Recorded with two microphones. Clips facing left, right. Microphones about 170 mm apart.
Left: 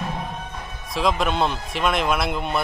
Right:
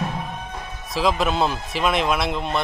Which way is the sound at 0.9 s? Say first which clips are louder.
Right 1 dB; centre (ahead or behind).